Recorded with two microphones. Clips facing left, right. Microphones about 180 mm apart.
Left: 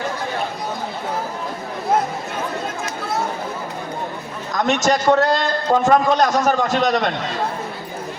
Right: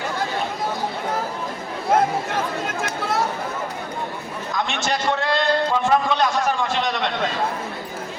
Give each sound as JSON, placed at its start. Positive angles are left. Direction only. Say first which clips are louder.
{"t": 4.5, "sound": "a man's voice", "louder": "left 7 dB", "side_deg": 40}